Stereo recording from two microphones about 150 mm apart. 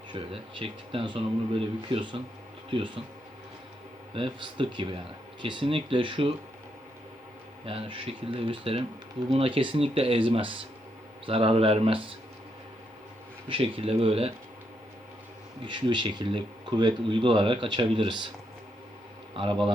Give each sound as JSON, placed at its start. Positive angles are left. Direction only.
{"t": 0.1, "sound": "speech", "side_deg": -40}
{"t": 4.1, "sound": "speech", "side_deg": -35}
{"t": 7.6, "sound": "speech", "side_deg": -40}
{"t": 13.5, "sound": "speech", "side_deg": -35}
{"t": 15.6, "sound": "speech", "side_deg": -30}